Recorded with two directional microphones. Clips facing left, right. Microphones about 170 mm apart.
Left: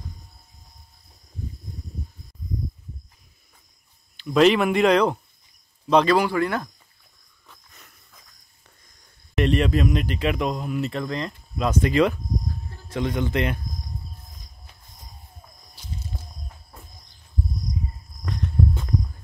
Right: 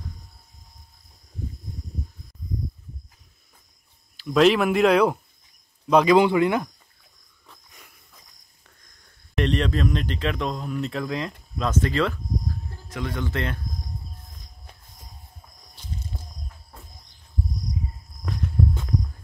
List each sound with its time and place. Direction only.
4.2 s a man's voice: centre (ahead or behind)
6.1 s speech: 20° right (ahead or behind)
9.3 s speech: 5° left (ahead or behind)
11.5 s speech: 10° left (ahead or behind)
18.2 s walk: 5° right (ahead or behind)